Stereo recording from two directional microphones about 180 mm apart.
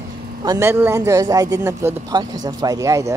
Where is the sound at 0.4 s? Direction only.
20° right (ahead or behind).